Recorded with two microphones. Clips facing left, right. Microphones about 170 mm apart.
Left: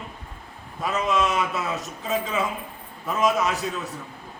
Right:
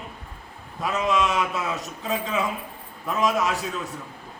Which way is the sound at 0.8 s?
Centre (ahead or behind).